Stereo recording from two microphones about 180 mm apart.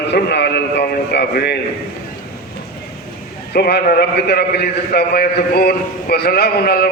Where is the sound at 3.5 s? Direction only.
65° left (ahead or behind).